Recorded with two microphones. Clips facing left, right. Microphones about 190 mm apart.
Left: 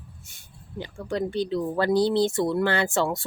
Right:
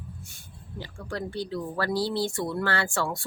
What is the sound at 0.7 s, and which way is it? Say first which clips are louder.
Speech: left 6 dB; 20° left (ahead or behind).